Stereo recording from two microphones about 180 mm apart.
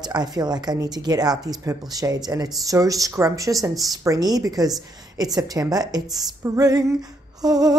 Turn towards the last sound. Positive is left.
turn(degrees=-20)  # may be behind; listen again after turning